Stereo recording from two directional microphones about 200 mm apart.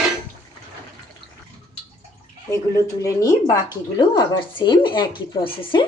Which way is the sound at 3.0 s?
15° left (ahead or behind).